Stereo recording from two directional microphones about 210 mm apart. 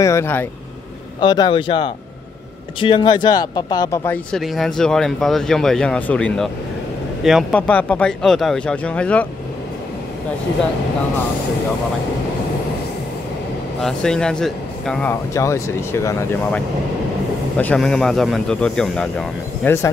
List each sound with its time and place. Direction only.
0.0 s speech: 10° left (ahead or behind)
13.7 s speech: 5° left (ahead or behind)